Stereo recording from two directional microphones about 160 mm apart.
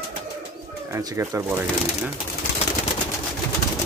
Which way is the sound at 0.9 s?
20° right (ahead or behind).